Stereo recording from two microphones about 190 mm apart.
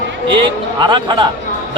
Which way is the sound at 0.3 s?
25° right (ahead or behind).